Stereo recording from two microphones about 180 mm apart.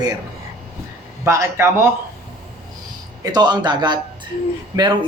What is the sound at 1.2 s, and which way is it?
Speech, 15° right (ahead or behind).